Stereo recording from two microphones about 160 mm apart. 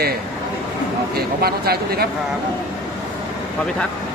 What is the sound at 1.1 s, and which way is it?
Speech, 75° right (ahead or behind).